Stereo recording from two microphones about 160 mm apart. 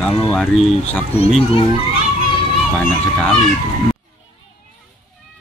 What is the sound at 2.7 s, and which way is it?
Speech, 5° left (ahead or behind).